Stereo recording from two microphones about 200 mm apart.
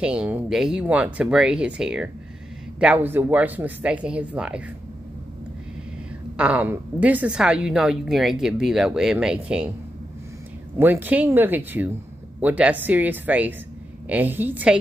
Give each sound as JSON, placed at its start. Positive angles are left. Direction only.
{"t": 0.0, "sound": "a woman's voice", "side_deg": -5}
{"t": 6.3, "sound": "a woman's voice", "side_deg": -5}
{"t": 10.8, "sound": "speech", "side_deg": -10}